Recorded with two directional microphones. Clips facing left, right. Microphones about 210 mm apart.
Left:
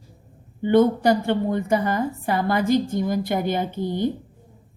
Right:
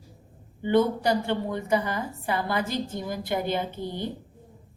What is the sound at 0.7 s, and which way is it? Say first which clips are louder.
A woman's voice: left 5 dB; 50° left (ahead or behind).